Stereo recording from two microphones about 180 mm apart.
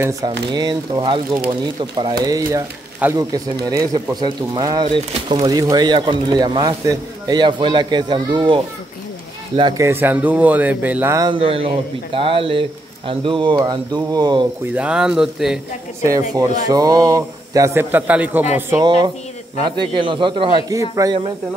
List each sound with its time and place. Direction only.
0.5 s speech: 25° right (ahead or behind)
9.8 s a man's voice: 10° right (ahead or behind)
11.2 s speech: 30° right (ahead or behind)
14.7 s speech: 5° right (ahead or behind)
16.0 s a man's voice: 15° right (ahead or behind)
18.7 s speech: 25° right (ahead or behind)